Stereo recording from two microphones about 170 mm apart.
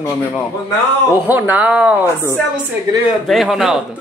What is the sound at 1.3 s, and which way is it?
Speech, 10° right (ahead or behind).